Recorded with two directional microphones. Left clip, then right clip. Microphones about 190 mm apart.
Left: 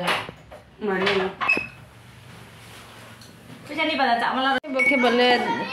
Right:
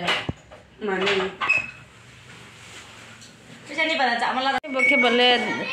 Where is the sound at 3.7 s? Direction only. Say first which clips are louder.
Even; 30° right (ahead or behind).